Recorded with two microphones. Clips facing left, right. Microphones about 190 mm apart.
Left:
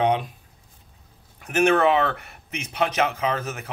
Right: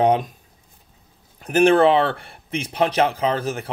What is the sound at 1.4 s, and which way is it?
Speech, 30° right (ahead or behind).